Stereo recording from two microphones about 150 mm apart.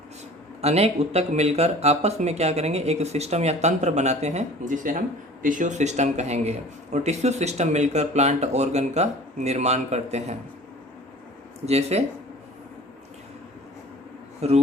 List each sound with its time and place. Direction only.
0.6 s speech: 45° right (ahead or behind)
11.6 s speech: 45° right (ahead or behind)
14.4 s speech: 45° right (ahead or behind)